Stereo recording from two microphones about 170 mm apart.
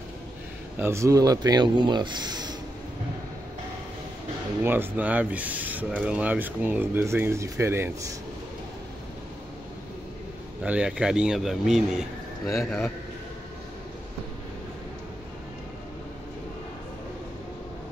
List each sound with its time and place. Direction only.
0.7 s speech: 15° right (ahead or behind)
4.6 s speech: 10° right (ahead or behind)
10.6 s speech: 5° right (ahead or behind)